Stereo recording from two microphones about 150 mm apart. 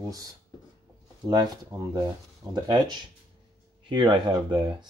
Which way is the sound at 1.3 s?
25° right (ahead or behind).